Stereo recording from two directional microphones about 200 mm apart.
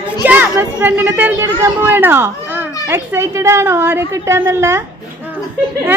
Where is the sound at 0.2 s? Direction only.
10° right (ahead or behind).